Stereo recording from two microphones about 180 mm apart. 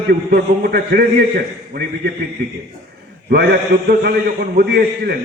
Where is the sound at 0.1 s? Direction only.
60° right (ahead or behind).